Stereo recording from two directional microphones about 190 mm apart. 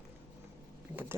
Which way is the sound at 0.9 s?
10° right (ahead or behind).